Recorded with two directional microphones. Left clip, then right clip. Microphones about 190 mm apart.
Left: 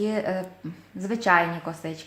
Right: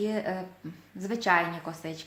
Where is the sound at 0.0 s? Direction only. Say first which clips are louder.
Left 4 dB; 30° left (ahead or behind).